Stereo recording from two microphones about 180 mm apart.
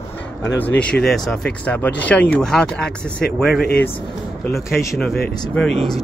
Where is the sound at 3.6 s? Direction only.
60° left (ahead or behind).